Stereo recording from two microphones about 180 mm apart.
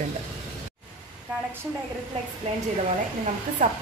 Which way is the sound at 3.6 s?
45° right (ahead or behind).